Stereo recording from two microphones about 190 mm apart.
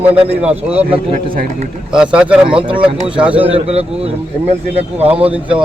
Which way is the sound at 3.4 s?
30° right (ahead or behind).